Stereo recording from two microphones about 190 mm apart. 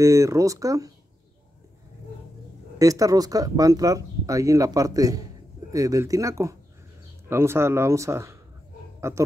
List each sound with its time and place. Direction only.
0.0 s speech: 15° right (ahead or behind)
2.8 s speech: 20° right (ahead or behind)